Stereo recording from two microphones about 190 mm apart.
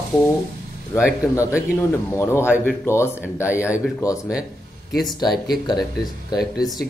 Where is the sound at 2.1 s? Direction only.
15° left (ahead or behind).